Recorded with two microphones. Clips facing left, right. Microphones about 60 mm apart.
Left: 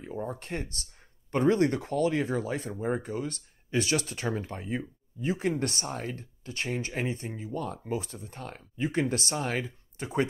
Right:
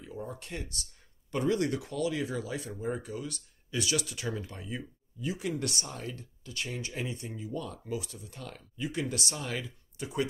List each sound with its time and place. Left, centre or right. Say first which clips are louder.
0.3 s speech: left 5 dB; left